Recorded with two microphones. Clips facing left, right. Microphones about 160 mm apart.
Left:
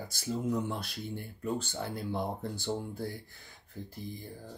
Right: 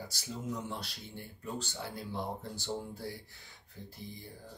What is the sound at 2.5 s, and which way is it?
Speech, 55° left (ahead or behind).